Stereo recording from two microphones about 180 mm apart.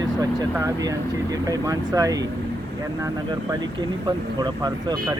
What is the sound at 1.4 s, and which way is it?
Speech, 20° right (ahead or behind).